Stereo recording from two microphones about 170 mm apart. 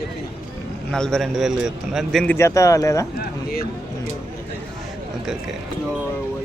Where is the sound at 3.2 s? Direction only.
65° left (ahead or behind).